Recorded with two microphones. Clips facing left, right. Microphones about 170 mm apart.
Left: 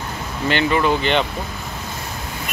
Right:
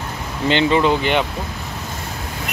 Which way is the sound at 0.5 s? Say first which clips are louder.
Right 2 dB; 20° right (ahead or behind).